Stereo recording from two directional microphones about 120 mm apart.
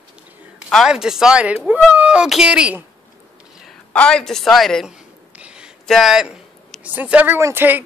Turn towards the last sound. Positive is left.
turn(degrees=-15)  # may be behind; listen again after turning